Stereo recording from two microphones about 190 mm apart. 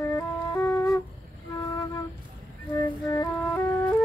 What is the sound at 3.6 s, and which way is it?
Music, 15° left (ahead or behind).